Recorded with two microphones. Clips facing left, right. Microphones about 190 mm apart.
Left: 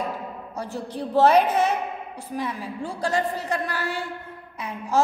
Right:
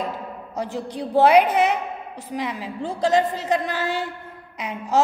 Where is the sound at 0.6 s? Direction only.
15° right (ahead or behind).